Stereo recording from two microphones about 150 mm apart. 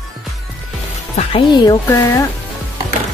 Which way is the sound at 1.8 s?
20° left (ahead or behind).